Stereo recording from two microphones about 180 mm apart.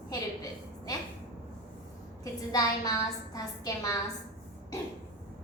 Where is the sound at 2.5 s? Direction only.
20° left (ahead or behind).